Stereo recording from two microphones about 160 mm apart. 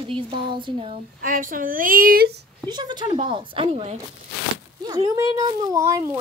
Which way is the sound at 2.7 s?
25° right (ahead or behind).